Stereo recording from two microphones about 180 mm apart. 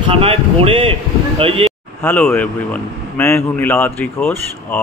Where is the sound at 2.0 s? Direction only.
10° left (ahead or behind).